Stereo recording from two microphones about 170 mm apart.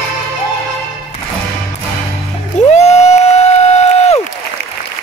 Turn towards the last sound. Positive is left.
turn(degrees=40)  # may be behind; listen again after turning